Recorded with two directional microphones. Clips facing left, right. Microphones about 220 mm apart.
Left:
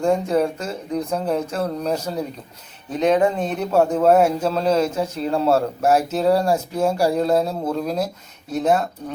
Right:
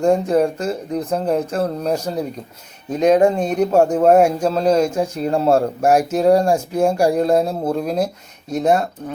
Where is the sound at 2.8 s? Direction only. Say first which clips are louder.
Right 4 dB; 40° right (ahead or behind).